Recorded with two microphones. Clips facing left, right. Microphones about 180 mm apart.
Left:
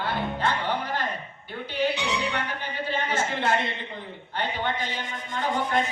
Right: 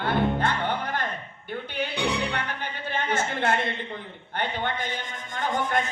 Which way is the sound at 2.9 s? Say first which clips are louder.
Even; 55° right (ahead or behind).